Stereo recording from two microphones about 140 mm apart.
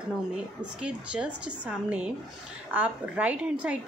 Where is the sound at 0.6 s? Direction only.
5° right (ahead or behind).